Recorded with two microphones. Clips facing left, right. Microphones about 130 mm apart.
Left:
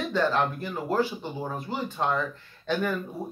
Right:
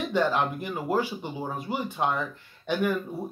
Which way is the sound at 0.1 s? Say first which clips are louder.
Even; 15° right (ahead or behind).